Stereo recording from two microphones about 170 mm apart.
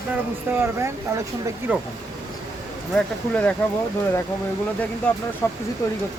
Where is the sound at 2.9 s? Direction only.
5° left (ahead or behind).